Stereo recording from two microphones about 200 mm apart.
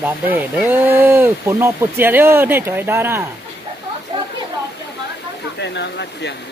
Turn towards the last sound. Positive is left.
turn(degrees=60)  # may be behind; listen again after turning